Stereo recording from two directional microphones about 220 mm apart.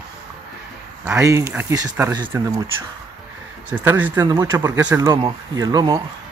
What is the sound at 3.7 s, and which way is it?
Speech, 10° right (ahead or behind).